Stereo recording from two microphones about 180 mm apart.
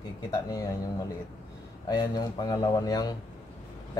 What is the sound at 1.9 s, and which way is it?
Speech, 25° left (ahead or behind).